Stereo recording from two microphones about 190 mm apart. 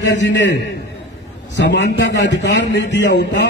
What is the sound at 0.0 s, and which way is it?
Speech, 70° left (ahead or behind).